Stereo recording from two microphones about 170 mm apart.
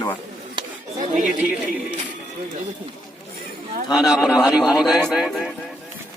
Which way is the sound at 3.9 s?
Centre (ahead or behind).